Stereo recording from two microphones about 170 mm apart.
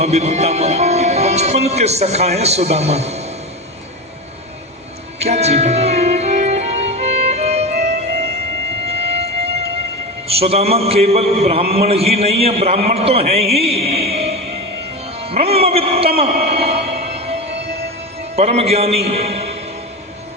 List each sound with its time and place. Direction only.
0.0 s speech: 40° right (ahead or behind)
5.2 s music: 40° right (ahead or behind)
8.9 s civil defense siren: 35° right (ahead or behind)
10.2 s a man's voice: 35° right (ahead or behind)
16.5 s music: 35° right (ahead or behind)
18.3 s a man's voice: 35° right (ahead or behind)